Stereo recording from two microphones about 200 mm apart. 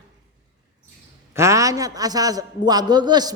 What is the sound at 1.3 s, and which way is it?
A man's voice, 15° right (ahead or behind).